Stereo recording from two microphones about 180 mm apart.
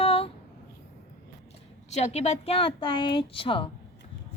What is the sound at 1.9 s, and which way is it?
Speech, 35° left (ahead or behind).